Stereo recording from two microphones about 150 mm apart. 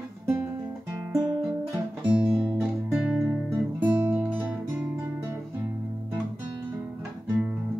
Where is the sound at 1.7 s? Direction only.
20° right (ahead or behind).